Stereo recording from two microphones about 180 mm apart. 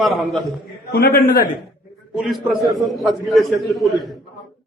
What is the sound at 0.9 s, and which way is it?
Speech, 55° left (ahead or behind).